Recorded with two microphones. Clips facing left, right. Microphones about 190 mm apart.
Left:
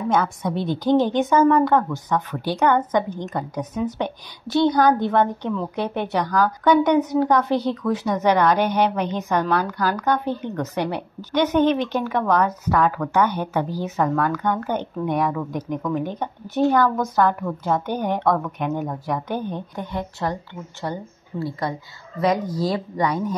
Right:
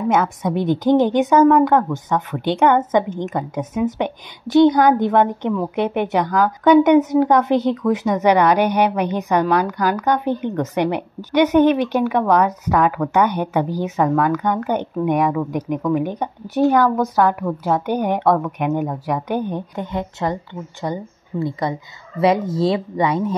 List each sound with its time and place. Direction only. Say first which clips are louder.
0.1 s a woman's voice: right 2 dB; 20° right (ahead or behind)